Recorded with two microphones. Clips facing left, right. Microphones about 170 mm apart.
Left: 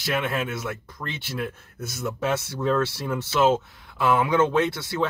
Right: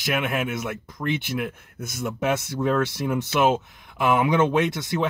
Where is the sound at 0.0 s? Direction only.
15° right (ahead or behind).